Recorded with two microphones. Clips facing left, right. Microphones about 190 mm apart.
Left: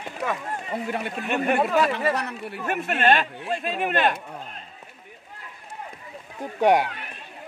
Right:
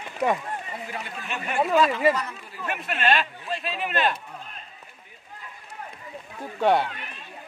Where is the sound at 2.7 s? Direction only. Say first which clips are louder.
Left 4 dB; 45° left (ahead or behind).